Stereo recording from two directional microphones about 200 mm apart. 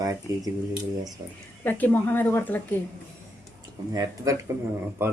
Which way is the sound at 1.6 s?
10° left (ahead or behind).